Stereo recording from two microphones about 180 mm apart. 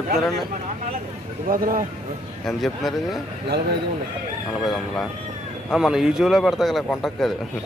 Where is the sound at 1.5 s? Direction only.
50° right (ahead or behind).